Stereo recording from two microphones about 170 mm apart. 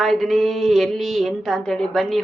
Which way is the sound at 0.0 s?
Centre (ahead or behind).